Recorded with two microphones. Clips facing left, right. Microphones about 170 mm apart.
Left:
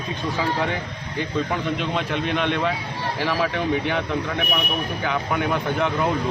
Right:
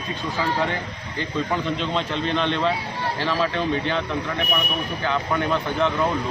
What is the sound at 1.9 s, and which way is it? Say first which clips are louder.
A man's voice: even; 10° left (ahead or behind).